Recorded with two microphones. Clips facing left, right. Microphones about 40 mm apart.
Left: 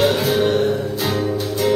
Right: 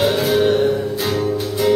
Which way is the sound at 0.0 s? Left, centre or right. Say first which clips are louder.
Right 1 dB; centre.